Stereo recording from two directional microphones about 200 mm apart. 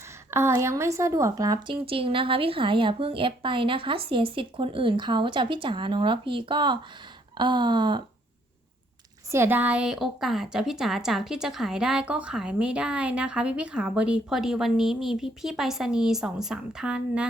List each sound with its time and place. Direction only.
0.3 s a woman's voice: 15° right (ahead or behind)
9.3 s a woman's voice: 10° right (ahead or behind)